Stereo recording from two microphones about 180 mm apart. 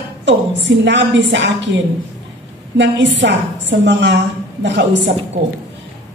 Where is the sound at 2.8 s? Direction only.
80° right.